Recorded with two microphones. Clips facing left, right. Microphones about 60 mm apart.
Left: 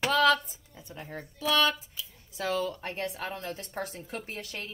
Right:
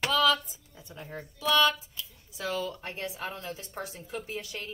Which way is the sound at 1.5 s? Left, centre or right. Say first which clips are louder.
Right 2 dB; left.